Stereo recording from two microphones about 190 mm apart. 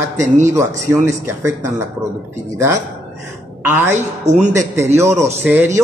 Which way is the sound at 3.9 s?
40° right (ahead or behind).